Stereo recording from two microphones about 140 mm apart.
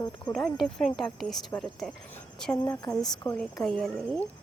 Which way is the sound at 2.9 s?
5° left (ahead or behind).